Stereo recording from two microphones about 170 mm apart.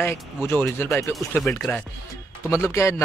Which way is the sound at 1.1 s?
5° left (ahead or behind).